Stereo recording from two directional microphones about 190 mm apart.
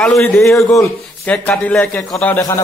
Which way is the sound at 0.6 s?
15° left (ahead or behind).